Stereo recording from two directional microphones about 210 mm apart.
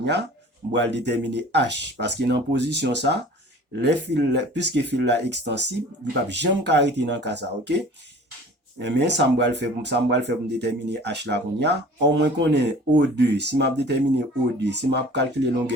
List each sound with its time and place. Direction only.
0.0 s speech: 55° right (ahead or behind)
8.8 s speech: 55° right (ahead or behind)